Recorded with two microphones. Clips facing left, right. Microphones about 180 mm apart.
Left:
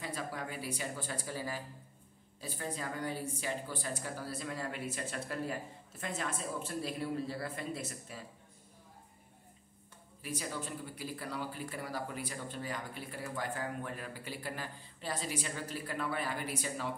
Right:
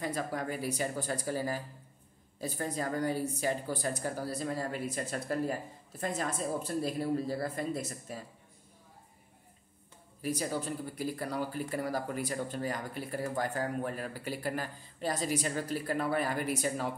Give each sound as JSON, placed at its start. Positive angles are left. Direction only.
{"t": 0.0, "sound": "speech", "side_deg": -45}
{"t": 10.2, "sound": "speech", "side_deg": -40}